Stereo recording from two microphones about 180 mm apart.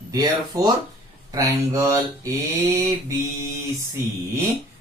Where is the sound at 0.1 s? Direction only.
20° right (ahead or behind).